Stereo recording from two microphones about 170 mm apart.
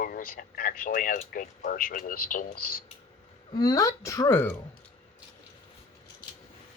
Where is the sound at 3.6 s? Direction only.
20° left (ahead or behind).